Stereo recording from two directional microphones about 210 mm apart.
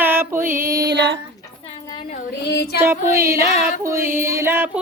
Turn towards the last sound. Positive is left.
turn(degrees=-10)  # may be behind; listen again after turning